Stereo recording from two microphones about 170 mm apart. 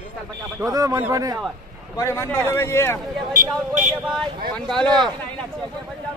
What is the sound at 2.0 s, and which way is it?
A man's voice, 15° left (ahead or behind).